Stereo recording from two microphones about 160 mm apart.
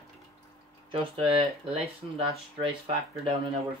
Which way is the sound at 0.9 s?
35° right (ahead or behind).